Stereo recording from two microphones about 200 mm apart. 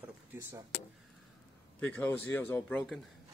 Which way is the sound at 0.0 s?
10° right (ahead or behind).